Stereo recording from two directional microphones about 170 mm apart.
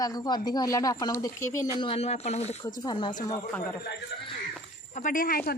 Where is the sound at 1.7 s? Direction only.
35° left (ahead or behind).